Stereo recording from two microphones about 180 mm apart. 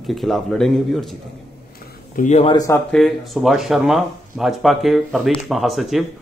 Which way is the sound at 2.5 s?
20° left (ahead or behind).